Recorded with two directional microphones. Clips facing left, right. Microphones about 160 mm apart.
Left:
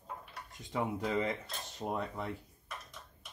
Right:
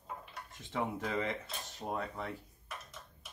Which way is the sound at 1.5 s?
Centre (ahead or behind).